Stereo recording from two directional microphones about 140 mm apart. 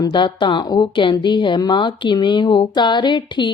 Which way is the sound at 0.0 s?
30° left (ahead or behind).